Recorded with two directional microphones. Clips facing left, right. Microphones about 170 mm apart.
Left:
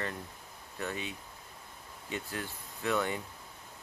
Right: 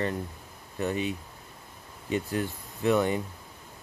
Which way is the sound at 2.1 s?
20° right (ahead or behind).